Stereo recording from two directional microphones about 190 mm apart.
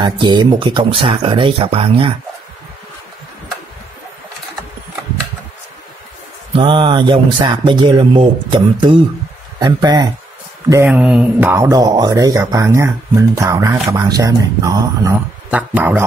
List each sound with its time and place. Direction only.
0.0 s speech: 20° right (ahead or behind)
6.5 s speech: 25° right (ahead or behind)
10.9 s speech: 5° right (ahead or behind)
15.5 s speech: 10° right (ahead or behind)